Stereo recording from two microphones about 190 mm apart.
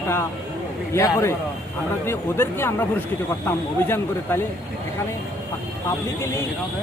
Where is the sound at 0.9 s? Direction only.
15° left (ahead or behind).